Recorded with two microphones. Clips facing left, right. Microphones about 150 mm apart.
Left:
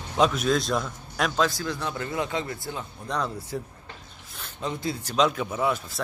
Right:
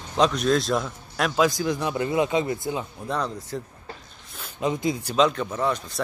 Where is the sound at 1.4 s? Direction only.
15° right (ahead or behind).